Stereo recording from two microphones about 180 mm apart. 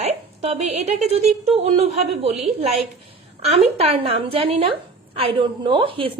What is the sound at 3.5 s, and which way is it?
A woman's voice, 35° right (ahead or behind).